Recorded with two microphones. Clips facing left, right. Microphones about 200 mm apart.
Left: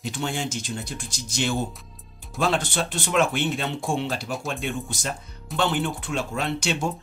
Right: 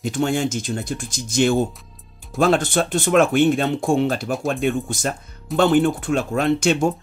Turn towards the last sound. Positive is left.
turn(degrees=-50)  # may be behind; listen again after turning